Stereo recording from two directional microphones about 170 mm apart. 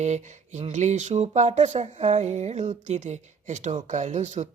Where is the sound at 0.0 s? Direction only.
45° right (ahead or behind).